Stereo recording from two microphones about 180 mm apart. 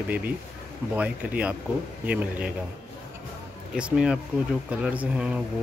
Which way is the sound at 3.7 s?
5° right (ahead or behind).